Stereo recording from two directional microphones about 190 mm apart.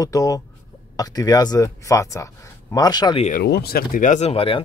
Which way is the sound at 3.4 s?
55° left (ahead or behind).